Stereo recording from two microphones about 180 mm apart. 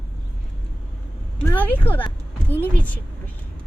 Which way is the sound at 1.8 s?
10° left (ahead or behind).